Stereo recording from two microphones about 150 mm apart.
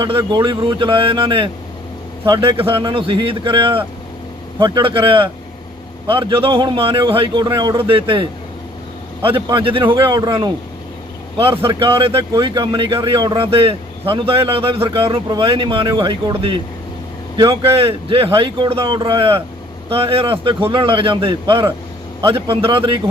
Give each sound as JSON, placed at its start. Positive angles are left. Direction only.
{"t": 0.2, "sound": "speech", "side_deg": -25}
{"t": 2.6, "sound": "speech", "side_deg": -35}
{"t": 11.6, "sound": "speech", "side_deg": -35}
{"t": 17.3, "sound": "speech", "side_deg": -35}